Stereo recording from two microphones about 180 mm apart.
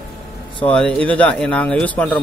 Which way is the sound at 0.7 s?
5° left (ahead or behind).